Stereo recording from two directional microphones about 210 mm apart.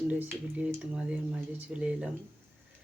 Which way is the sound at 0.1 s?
5° right (ahead or behind).